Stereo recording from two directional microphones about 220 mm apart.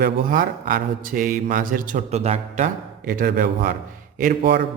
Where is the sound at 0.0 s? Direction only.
40° right (ahead or behind).